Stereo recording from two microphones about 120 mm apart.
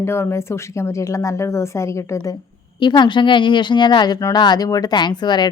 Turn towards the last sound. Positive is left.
turn(degrees=35)  # may be behind; listen again after turning